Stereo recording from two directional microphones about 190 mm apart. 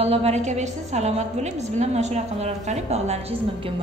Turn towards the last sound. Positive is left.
turn(degrees=-35)  # may be behind; listen again after turning